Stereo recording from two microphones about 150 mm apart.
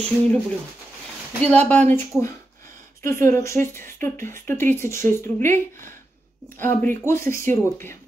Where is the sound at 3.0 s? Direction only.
15° left (ahead or behind).